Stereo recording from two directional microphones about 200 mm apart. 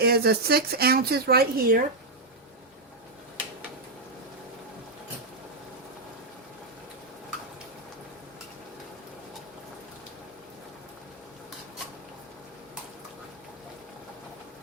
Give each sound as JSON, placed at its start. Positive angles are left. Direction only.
{"t": 0.0, "sound": "speech", "side_deg": -50}